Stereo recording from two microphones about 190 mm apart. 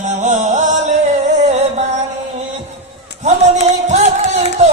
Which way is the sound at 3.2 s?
35° right (ahead or behind).